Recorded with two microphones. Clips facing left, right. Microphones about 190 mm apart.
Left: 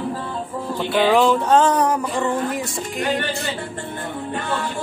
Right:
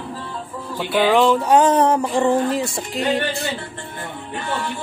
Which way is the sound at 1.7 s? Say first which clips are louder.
Right 3 dB; 25° right (ahead or behind).